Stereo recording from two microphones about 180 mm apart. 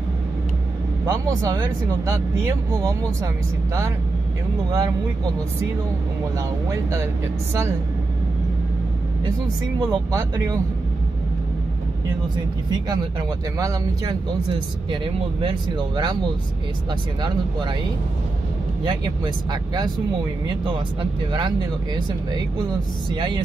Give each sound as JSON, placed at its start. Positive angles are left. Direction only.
{"t": 1.0, "sound": "speech", "side_deg": -20}
{"t": 4.6, "sound": "speech", "side_deg": -20}
{"t": 6.7, "sound": "speech", "side_deg": -15}
{"t": 10.1, "sound": "speech", "side_deg": -20}
{"t": 12.6, "sound": "speech", "side_deg": -20}
{"t": 18.9, "sound": "speech", "side_deg": -25}
{"t": 23.1, "sound": "speech", "side_deg": -25}